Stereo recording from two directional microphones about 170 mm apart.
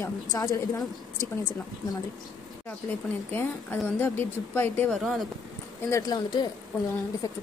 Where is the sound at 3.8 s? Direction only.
10° left (ahead or behind).